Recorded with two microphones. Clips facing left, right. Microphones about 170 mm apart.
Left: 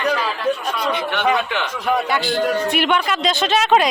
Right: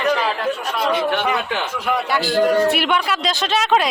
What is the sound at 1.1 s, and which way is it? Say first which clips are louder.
Speech: left 1 dB; 40° right (ahead or behind).